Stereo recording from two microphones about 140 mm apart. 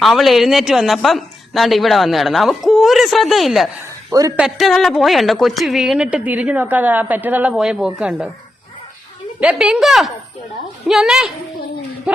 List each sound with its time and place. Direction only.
0.0 s speech: centre (ahead or behind)
4.1 s a woman's voice: 25° right (ahead or behind)
4.4 s a woman's voice: centre (ahead or behind)
9.4 s a woman's voice: 5° right (ahead or behind)